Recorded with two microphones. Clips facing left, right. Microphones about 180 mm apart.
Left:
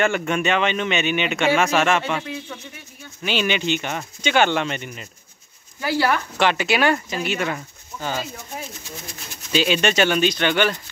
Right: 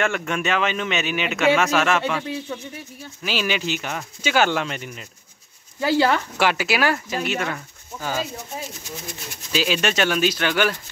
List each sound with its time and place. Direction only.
0.0 s speech: centre (ahead or behind)
3.3 s speech: centre (ahead or behind)
5.9 s speech: 20° right (ahead or behind)
6.3 s speech: 5° right (ahead or behind)
9.5 s speech: centre (ahead or behind)